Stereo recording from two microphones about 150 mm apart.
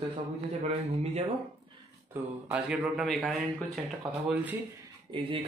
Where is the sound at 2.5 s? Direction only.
10° right (ahead or behind).